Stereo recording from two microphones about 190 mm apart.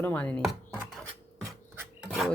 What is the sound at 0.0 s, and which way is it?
Chopping, 10° left (ahead or behind).